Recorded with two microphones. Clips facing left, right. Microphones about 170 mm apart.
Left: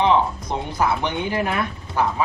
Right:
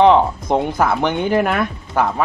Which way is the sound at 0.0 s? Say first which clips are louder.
Right 6 dB; 50° right (ahead or behind).